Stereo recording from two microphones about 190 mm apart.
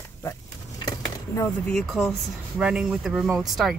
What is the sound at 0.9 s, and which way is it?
Dishes, 15° left (ahead or behind).